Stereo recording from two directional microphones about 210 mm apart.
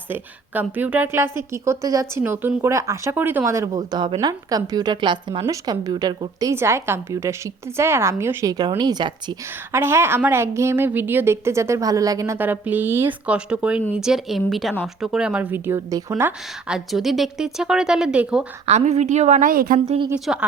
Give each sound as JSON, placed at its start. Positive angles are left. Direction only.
{"t": 0.1, "sound": "a woman's voice", "side_deg": -10}
{"t": 18.6, "sound": "a woman's voice", "side_deg": -30}
{"t": 20.1, "sound": "a woman's voice", "side_deg": -5}